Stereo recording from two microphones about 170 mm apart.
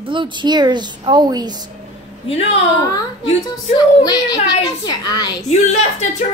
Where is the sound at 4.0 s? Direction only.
20° left (ahead or behind).